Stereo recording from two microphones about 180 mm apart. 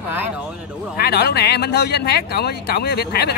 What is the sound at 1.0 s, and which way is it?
Speech, 65° left (ahead or behind).